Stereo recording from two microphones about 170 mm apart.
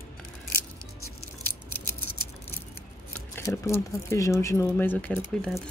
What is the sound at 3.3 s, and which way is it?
Speech, 15° left (ahead or behind).